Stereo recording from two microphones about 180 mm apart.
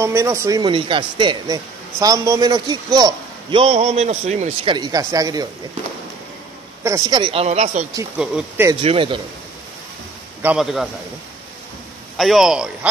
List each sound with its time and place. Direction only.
0.0 s speech: 15° right (ahead or behind); by 4.7 s 40° right (ahead or behind)
4.7 s speech: 20° right (ahead or behind)
6.8 s speech: 20° right (ahead or behind)
7.4 s speech: 40° right (ahead or behind)
8.2 s a man's voice: 5° right (ahead or behind)
8.8 s speech: 30° right (ahead or behind)
10.4 s a man's voice: 5° right (ahead or behind)
12.2 s a man's voice: centre (ahead or behind)